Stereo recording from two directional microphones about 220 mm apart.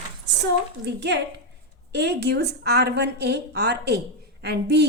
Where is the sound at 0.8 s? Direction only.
50° right (ahead or behind).